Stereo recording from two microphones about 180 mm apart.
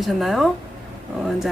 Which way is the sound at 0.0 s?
Centre (ahead or behind).